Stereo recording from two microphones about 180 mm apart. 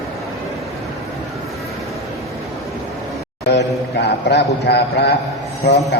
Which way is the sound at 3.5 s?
70° left (ahead or behind).